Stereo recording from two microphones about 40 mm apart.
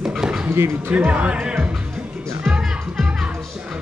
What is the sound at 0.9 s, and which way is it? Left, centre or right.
Speech, right.